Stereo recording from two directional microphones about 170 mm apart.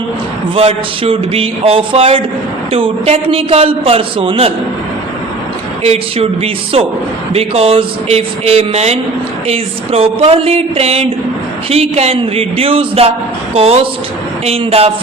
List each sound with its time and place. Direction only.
0.5 s a man's voice: 35° right (ahead or behind)
5.8 s a man's voice: 35° right (ahead or behind)